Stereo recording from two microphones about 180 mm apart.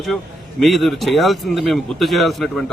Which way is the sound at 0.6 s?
Centre (ahead or behind).